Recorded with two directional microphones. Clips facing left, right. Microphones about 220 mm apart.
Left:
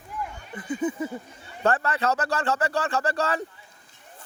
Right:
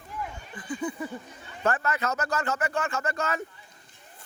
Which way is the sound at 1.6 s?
35° left (ahead or behind).